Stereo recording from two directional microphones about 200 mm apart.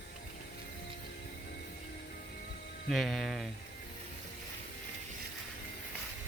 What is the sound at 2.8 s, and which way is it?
Speech, centre (ahead or behind).